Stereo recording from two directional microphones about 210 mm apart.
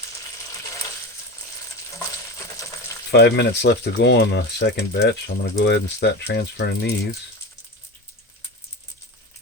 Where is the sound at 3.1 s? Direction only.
55° left (ahead or behind).